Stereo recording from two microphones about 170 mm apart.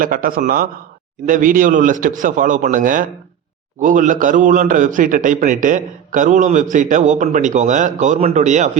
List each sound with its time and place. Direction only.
0.0 s a man's voice: 55° right (ahead or behind)